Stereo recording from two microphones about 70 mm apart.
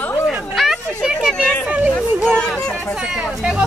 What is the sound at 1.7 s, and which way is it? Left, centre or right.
Speech, right.